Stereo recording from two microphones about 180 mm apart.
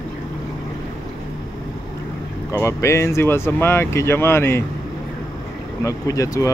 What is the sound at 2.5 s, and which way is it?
Speech, 15° left (ahead or behind).